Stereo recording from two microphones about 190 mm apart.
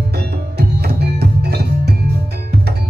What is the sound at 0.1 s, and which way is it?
Music, 55° right (ahead or behind).